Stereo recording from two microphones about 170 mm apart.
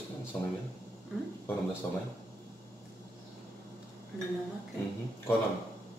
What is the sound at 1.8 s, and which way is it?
Speech, 10° left (ahead or behind).